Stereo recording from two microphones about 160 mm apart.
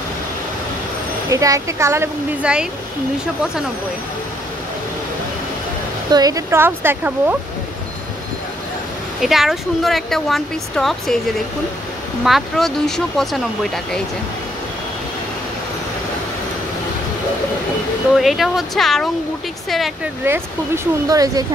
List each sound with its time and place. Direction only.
1.3 s speech: 20° right (ahead or behind)
2.4 s speech: 5° right (ahead or behind)
6.1 s speech: 25° right (ahead or behind)
9.2 s speech: centre (ahead or behind)
12.3 s speech: centre (ahead or behind)
18.1 s speech: centre (ahead or behind)
20.2 s speech: 15° right (ahead or behind)